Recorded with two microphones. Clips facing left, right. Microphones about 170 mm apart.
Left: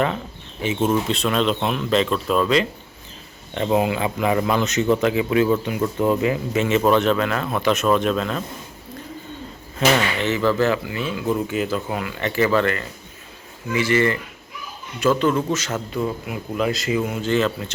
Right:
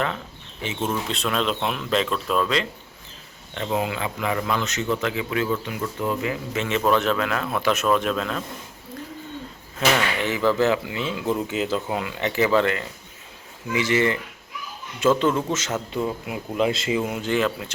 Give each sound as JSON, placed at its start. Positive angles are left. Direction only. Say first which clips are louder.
{"t": 0.6, "sound": "speech", "louder": "left 6 dB", "side_deg": 10}
{"t": 1.1, "sound": "speech", "louder": "left 4 dB", "side_deg": 0}
{"t": 3.5, "sound": "speech", "louder": "left 6 dB", "side_deg": 20}
{"t": 6.6, "sound": "speech", "louder": "left 4 dB", "side_deg": 5}
{"t": 10.2, "sound": "speech", "louder": "left 2 dB", "side_deg": -15}